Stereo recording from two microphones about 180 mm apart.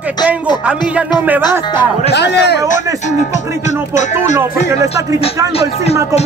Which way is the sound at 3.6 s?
40° left (ahead or behind).